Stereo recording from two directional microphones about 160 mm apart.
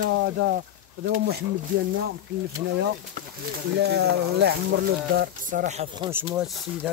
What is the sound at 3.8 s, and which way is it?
Speech, 90° right.